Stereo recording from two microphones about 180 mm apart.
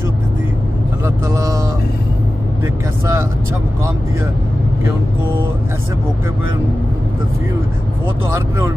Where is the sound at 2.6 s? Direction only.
15° right (ahead or behind).